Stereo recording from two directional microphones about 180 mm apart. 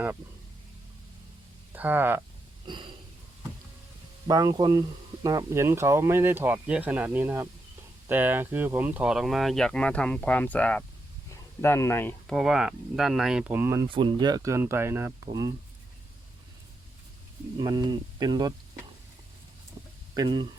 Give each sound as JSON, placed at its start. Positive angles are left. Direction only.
{"t": 1.7, "sound": "speech", "side_deg": -10}
{"t": 2.6, "sound": "a sound", "side_deg": -25}
{"t": 4.3, "sound": "speech", "side_deg": -20}
{"t": 12.3, "sound": "speech", "side_deg": 0}
{"t": 13.8, "sound": "speech", "side_deg": -30}
{"t": 17.6, "sound": "speech", "side_deg": -25}
{"t": 20.1, "sound": "speech", "side_deg": -25}